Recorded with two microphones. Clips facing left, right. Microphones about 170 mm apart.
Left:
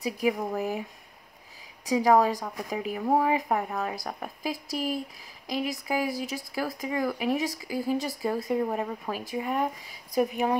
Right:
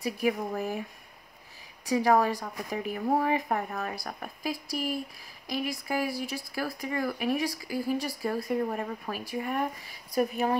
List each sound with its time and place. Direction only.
0.0 s speech: 15° left (ahead or behind)
1.9 s speech: 15° left (ahead or behind)